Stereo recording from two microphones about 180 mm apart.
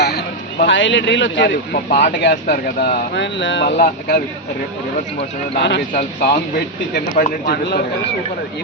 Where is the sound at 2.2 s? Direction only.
65° left (ahead or behind); by 3.7 s 85° left.